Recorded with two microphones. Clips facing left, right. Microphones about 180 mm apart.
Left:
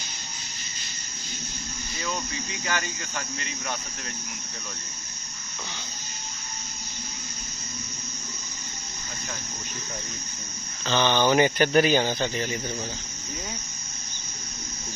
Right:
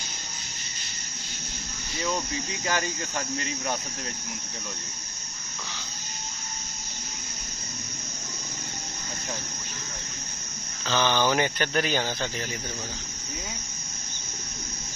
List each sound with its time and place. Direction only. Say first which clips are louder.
2.6 s cricket: right 2 dB; 30° right (ahead or behind)
10.9 s speech: left 2 dB; centre (ahead or behind)